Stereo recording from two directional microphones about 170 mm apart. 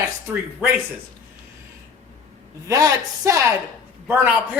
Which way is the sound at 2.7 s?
20° right (ahead or behind).